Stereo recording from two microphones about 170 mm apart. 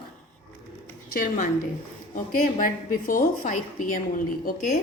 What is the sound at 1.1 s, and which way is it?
A woman's voice, 55° left (ahead or behind).